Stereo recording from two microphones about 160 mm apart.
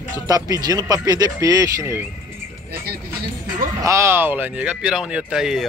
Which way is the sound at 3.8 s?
15° right (ahead or behind).